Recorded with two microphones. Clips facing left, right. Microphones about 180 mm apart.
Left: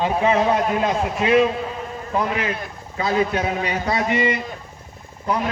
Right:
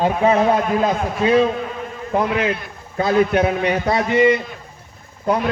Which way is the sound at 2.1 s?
55° right (ahead or behind).